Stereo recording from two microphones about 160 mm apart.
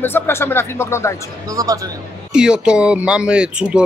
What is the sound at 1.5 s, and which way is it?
Speech, 20° right (ahead or behind).